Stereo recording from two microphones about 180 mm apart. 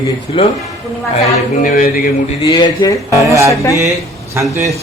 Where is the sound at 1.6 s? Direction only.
50° left (ahead or behind).